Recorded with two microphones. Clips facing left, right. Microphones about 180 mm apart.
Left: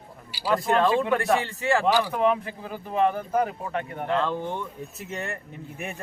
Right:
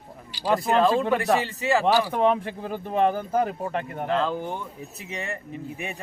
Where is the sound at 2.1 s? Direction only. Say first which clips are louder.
Right 1 dB; 35° right (ahead or behind).